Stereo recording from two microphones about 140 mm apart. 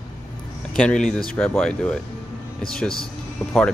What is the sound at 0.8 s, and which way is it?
Speech, 5° left (ahead or behind).